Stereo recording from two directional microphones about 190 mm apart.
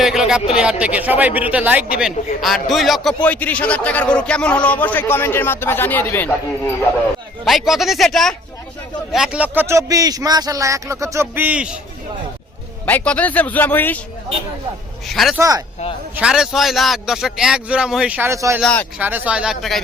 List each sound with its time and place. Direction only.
0.0 s a sound: 5° right (ahead or behind)
0.5 s a man's voice: 5° right (ahead or behind)
7.4 s a man's voice: centre (ahead or behind)
12.8 s speech: 10° left (ahead or behind)
15.0 s a man's voice: centre (ahead or behind)
15.4 s a man's voice: 20° right (ahead or behind)
16.1 s a man's voice: 5° right (ahead or behind)
18.6 s speech: 5° left (ahead or behind)
18.9 s a man's voice: 10° right (ahead or behind)